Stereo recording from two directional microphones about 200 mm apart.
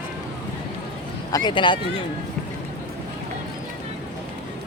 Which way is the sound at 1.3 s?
20° left (ahead or behind).